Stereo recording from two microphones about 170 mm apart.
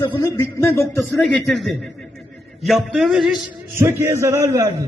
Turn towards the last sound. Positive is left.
turn(degrees=-20)  # may be behind; listen again after turning